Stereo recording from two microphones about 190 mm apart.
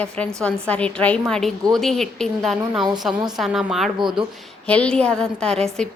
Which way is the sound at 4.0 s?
25° right (ahead or behind).